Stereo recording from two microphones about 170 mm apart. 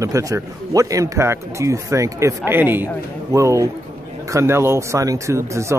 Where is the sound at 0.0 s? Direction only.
20° right (ahead or behind).